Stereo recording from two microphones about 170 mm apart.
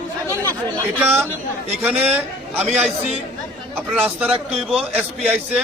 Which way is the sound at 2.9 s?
40° right (ahead or behind).